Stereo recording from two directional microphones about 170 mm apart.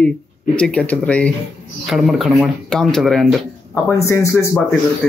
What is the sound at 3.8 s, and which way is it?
Speech, 15° left (ahead or behind).